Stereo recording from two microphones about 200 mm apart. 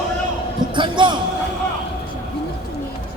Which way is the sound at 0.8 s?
25° right (ahead or behind).